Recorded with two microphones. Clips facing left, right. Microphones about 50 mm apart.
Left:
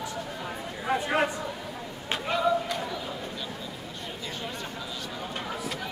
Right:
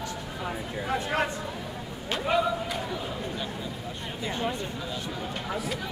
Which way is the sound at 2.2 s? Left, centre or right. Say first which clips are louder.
Even; centre.